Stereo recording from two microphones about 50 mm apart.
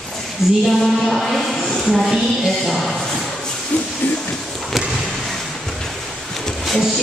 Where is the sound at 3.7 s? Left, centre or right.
Left.